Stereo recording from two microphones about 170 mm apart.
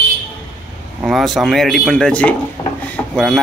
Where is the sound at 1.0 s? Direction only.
Centre (ahead or behind).